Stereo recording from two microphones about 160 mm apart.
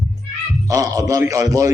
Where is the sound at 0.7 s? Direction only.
20° right (ahead or behind).